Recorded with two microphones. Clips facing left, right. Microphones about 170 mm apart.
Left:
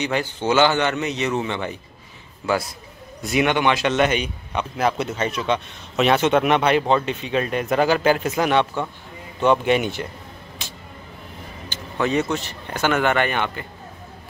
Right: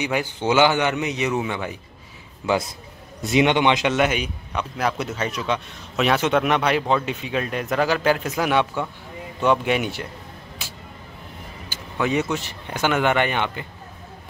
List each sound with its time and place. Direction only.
0.0 s speech: 10° right (ahead or behind)
2.4 s a man's voice: 20° right (ahead or behind); by 10.0 s centre (ahead or behind)
11.7 s speech: 10° right (ahead or behind)